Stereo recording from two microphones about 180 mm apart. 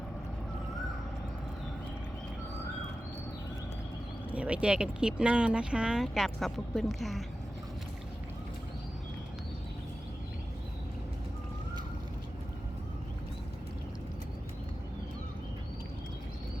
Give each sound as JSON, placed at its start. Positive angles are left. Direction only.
{"t": 4.3, "sound": "speech", "side_deg": -5}